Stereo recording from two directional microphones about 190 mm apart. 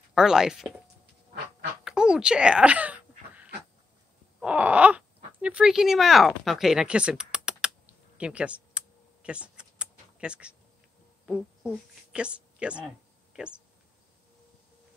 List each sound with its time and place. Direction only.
0.1 s speech: 5° right (ahead or behind)
1.9 s a sound: 5° right (ahead or behind)
11.2 s a woman's voice: 5° right (ahead or behind)